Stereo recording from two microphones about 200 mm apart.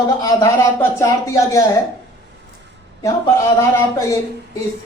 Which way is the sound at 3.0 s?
15° left (ahead or behind).